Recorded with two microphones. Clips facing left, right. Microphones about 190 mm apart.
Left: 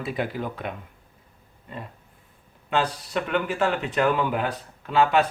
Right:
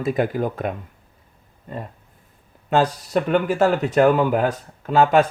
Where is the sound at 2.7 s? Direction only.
40° right (ahead or behind).